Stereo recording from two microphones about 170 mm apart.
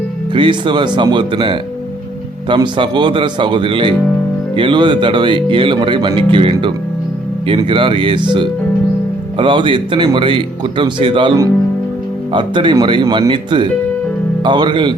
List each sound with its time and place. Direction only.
0.3 s speech: 30° right (ahead or behind)